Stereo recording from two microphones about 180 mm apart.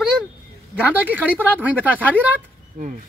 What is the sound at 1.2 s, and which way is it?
Speech, 10° left (ahead or behind).